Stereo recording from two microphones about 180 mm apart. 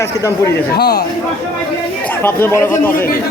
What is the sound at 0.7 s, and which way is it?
Speech, 60° left (ahead or behind).